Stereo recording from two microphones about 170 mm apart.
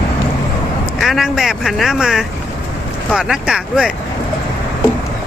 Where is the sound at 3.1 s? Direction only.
5° right (ahead or behind).